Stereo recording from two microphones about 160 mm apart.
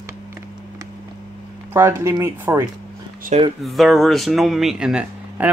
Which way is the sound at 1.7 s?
15° right (ahead or behind).